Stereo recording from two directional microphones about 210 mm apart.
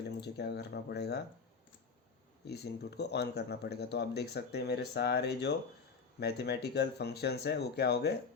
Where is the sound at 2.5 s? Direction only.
50° left (ahead or behind).